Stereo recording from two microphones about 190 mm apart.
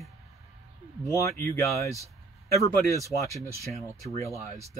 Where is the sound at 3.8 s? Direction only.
15° left (ahead or behind).